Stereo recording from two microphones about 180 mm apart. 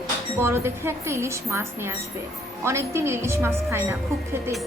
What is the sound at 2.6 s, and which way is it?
A woman's voice, 15° right (ahead or behind).